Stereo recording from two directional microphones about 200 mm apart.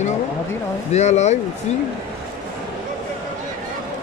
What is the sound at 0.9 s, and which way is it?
Speech, 35° left (ahead or behind).